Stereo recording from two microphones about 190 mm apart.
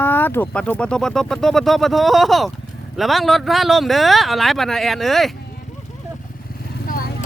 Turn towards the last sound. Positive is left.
turn(degrees=50)  # may be behind; listen again after turning